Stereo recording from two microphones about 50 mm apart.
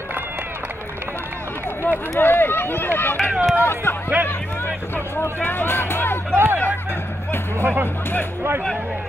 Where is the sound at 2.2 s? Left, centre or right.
Left.